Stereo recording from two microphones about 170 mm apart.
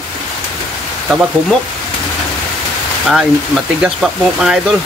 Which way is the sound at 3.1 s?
5° right (ahead or behind).